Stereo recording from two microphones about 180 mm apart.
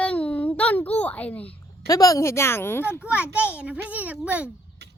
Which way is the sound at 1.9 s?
20° left (ahead or behind).